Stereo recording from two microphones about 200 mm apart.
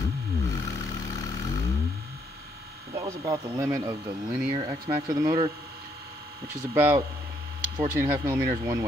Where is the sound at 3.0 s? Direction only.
15° right (ahead or behind).